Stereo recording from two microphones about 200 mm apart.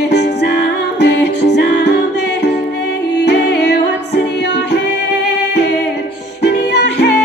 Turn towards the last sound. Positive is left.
turn(degrees=55)  # may be behind; listen again after turning